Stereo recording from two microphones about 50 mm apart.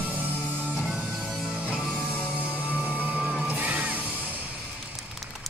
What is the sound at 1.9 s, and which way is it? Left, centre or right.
Music, left.